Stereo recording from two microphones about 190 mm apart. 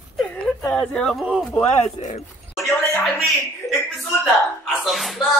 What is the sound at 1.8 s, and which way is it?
Speech, 40° left (ahead or behind).